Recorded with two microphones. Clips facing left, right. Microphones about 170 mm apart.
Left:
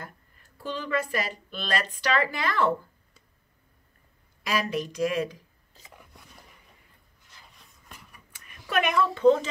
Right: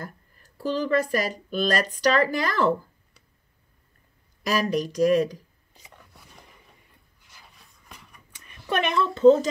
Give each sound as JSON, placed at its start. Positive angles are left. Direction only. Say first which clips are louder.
{"t": 0.0, "sound": "speech", "louder": "right 5 dB", "side_deg": -40}
{"t": 4.4, "sound": "speech", "louder": "right 4 dB", "side_deg": -40}
{"t": 7.9, "sound": "a sound", "louder": "right 1 dB", "side_deg": 0}
{"t": 8.7, "sound": "speech", "louder": "even", "side_deg": -30}